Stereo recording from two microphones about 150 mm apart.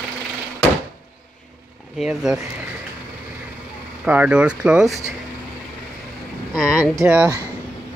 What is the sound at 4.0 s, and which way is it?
Speech, 10° right (ahead or behind).